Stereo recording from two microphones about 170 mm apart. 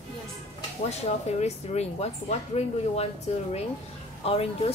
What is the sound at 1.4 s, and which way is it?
Speech, 40° left (ahead or behind).